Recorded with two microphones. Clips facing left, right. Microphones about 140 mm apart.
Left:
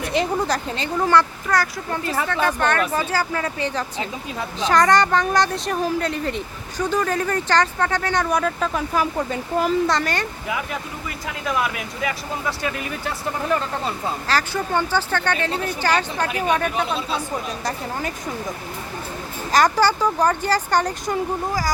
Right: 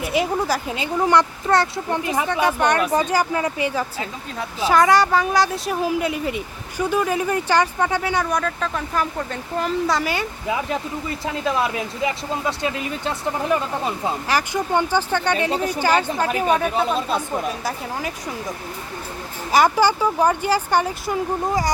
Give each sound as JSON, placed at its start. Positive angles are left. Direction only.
{"t": 0.0, "sound": "speech", "side_deg": -5}
{"t": 8.3, "sound": "speech", "side_deg": 5}
{"t": 11.3, "sound": "speech", "side_deg": -30}
{"t": 19.5, "sound": "speech", "side_deg": -10}